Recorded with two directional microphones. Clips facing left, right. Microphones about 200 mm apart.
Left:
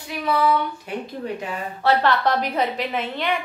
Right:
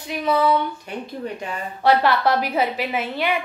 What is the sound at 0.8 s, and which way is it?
Speech, 5° left (ahead or behind).